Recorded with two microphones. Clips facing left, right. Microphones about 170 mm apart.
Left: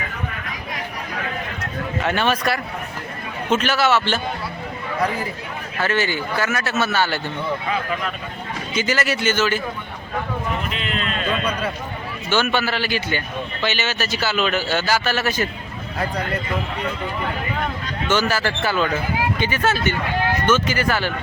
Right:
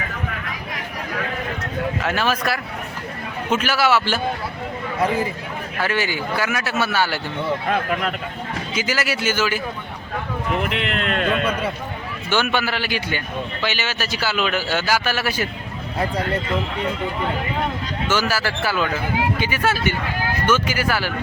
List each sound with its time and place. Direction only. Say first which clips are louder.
2.0 s a man's voice: left 4 dB; centre (ahead or behind)
5.8 s a man's voice: left 1 dB; 10° right (ahead or behind)
7.7 s speech: right 3 dB; 60° right (ahead or behind)
8.7 s a man's voice: left 3 dB; 5° right (ahead or behind)
10.6 s speech: right 3 dB; 70° right (ahead or behind)
12.3 s a man's voice: left 1 dB; 15° right (ahead or behind)
18.1 s a man's voice: left 2 dB; 5° right (ahead or behind)